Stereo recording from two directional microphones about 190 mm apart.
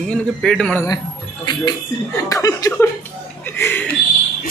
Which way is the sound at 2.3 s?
20° left (ahead or behind).